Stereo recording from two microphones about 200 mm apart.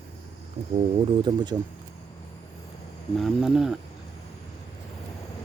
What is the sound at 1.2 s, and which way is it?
Speech, 20° right (ahead or behind).